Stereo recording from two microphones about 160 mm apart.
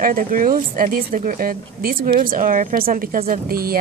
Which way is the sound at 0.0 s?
60° right (ahead or behind).